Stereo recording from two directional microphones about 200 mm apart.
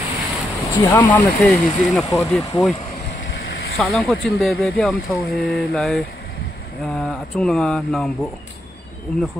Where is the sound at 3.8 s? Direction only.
Centre (ahead or behind).